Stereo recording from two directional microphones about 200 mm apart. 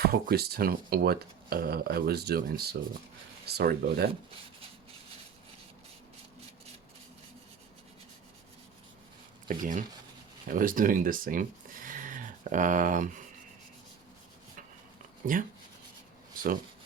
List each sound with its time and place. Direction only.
0.0 s speech: 50° right (ahead or behind)
9.5 s speech: 40° right (ahead or behind)